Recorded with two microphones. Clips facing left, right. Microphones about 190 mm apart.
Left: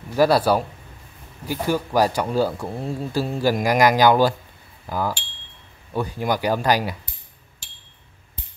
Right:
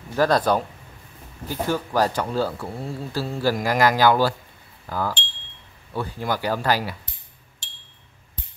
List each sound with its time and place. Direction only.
0.1 s speech: 10° left (ahead or behind)